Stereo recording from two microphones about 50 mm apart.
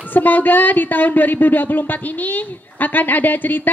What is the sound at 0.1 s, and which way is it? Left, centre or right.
A woman's voice, left.